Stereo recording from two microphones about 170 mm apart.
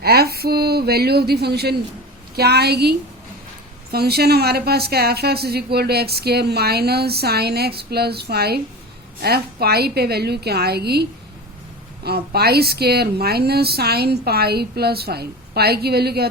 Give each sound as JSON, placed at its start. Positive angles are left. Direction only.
{"t": 0.0, "sound": "a woman's voice", "side_deg": -65}
{"t": 3.9, "sound": "a woman's voice", "side_deg": -65}
{"t": 12.0, "sound": "a woman's voice", "side_deg": -70}